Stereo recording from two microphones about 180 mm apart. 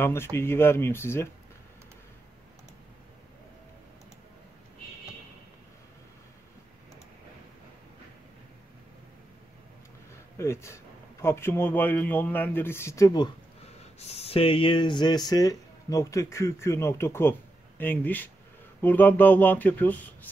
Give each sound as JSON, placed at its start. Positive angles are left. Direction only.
{"t": 0.0, "sound": "speech", "side_deg": 15}
{"t": 10.3, "sound": "speech", "side_deg": 15}
{"t": 13.9, "sound": "speech", "side_deg": 35}